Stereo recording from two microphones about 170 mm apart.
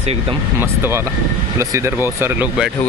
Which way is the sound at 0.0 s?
35° right (ahead or behind).